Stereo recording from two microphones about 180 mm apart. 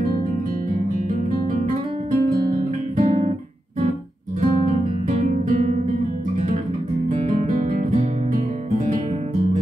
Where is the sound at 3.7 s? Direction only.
45° right (ahead or behind).